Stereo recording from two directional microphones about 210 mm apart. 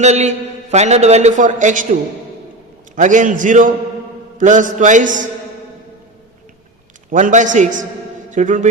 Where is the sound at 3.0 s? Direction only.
35° right (ahead or behind).